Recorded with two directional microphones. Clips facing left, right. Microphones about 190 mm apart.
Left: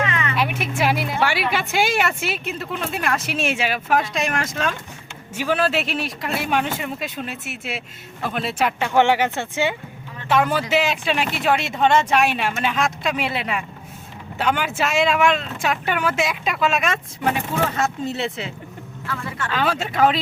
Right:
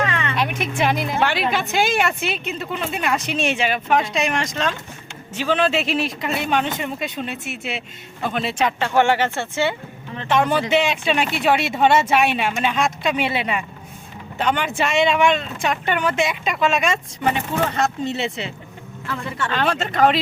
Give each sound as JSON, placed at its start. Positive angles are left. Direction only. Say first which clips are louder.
{"t": 0.0, "sound": "a sound", "louder": "right 1 dB", "side_deg": -30}
{"t": 0.3, "sound": "speech", "louder": "right 1 dB", "side_deg": 5}
{"t": 10.2, "sound": "speech", "louder": "right 1 dB", "side_deg": 5}